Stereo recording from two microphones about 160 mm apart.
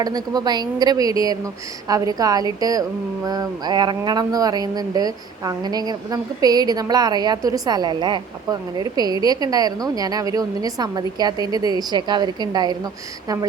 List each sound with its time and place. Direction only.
0.0 s speech: 25° right (ahead or behind)